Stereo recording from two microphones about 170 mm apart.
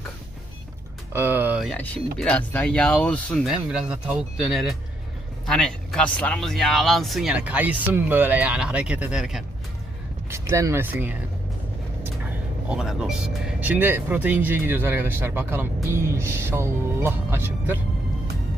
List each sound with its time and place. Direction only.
1.1 s a sound: 10° right (ahead or behind)
2.1 s speech: 5° left (ahead or behind)
3.5 s speech: 5° right (ahead or behind)
10.2 s speech: 15° right (ahead or behind)
12.6 s speech: 5° right (ahead or behind)